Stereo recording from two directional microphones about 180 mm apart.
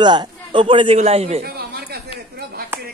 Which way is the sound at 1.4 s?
60° right (ahead or behind).